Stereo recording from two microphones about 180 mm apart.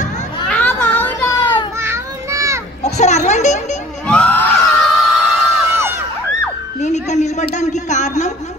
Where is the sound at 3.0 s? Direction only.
40° left (ahead or behind).